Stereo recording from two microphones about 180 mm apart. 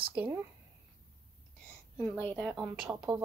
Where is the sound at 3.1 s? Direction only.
25° right (ahead or behind).